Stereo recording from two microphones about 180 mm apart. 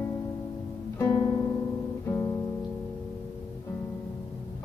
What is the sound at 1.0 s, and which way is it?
Music, 20° left (ahead or behind).